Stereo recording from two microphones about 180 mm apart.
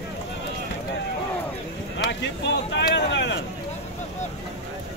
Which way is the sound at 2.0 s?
80° left.